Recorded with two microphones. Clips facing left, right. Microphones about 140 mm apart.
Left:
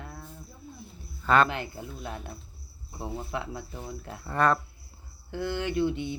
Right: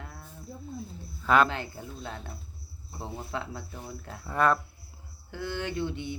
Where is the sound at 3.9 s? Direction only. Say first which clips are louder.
Left 2 dB; 20° left (ahead or behind).